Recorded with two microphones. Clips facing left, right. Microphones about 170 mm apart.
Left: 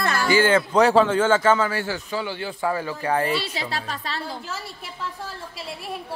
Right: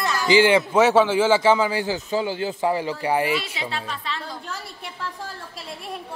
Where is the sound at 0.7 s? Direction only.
5° right (ahead or behind).